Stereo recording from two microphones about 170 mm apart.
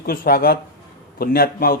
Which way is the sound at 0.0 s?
60° left (ahead or behind).